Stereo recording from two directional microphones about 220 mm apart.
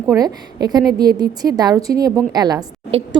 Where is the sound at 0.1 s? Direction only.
15° right (ahead or behind).